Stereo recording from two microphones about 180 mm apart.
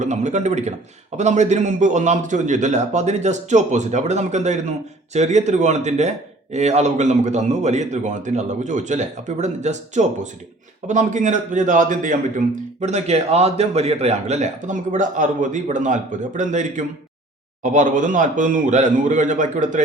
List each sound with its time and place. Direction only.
0.0 s a man's voice: 40° right (ahead or behind)